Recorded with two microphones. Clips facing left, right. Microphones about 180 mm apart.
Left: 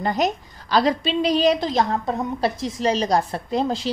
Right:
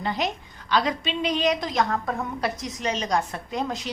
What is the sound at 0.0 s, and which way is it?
A woman's voice, 45° left (ahead or behind).